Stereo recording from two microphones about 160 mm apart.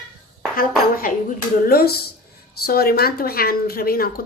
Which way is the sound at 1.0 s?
60° left (ahead or behind).